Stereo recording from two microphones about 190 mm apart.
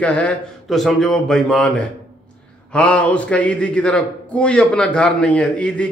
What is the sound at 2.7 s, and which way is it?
A man's voice, 5° left (ahead or behind).